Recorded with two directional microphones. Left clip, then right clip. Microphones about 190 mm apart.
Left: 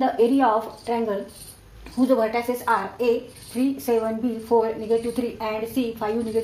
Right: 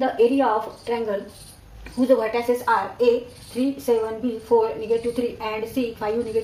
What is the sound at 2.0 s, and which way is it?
Speech, 30° left (ahead or behind).